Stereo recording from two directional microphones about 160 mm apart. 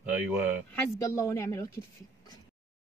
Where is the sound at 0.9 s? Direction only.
20° left (ahead or behind).